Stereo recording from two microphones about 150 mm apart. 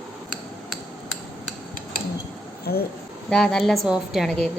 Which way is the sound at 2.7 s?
90° left.